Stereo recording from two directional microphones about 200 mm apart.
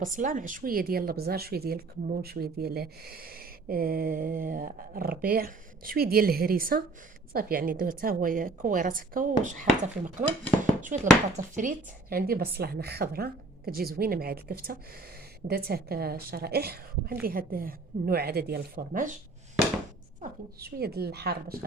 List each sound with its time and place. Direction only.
0.0 s speech: 40° right (ahead or behind)
10.6 s dishes: 40° right (ahead or behind)
11.5 s speech: 45° right (ahead or behind)
20.6 s speech: 50° right (ahead or behind)